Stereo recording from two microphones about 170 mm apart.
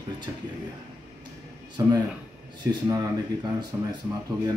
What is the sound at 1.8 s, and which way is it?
Speech, 20° right (ahead or behind).